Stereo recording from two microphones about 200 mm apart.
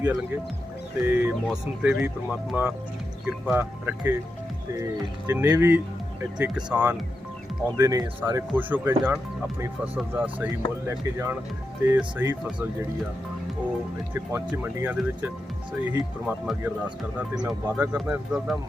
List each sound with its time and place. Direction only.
1.0 s speech: 10° right (ahead or behind)
14.1 s speech: 10° right (ahead or behind)